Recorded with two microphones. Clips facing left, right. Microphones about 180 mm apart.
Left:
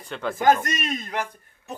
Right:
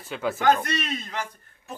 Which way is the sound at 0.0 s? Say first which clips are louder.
Right 1 dB; 5° right (ahead or behind).